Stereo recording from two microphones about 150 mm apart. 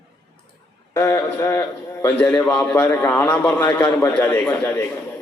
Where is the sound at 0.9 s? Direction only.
20° left (ahead or behind).